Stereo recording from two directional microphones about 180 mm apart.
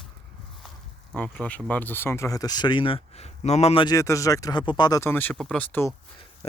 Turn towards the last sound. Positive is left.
turn(degrees=10)  # may be behind; listen again after turning